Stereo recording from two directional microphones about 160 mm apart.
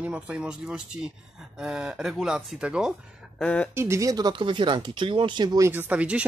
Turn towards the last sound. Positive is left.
turn(degrees=-10)  # may be behind; listen again after turning